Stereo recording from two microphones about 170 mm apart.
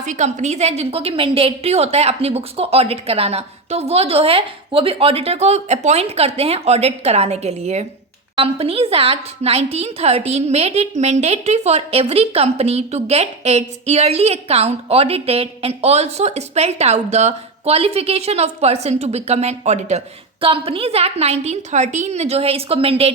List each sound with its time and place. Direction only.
0.0 s a woman's voice: 45° right (ahead or behind)